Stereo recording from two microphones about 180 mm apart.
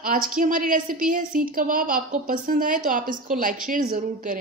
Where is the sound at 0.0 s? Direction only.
50° right (ahead or behind).